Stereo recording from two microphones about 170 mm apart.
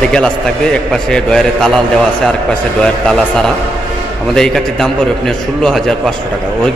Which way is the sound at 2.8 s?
5° left (ahead or behind).